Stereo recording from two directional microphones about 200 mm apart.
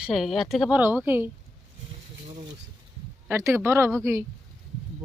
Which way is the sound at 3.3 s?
15° right (ahead or behind).